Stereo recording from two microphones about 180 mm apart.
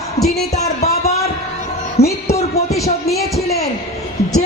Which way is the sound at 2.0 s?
35° left (ahead or behind).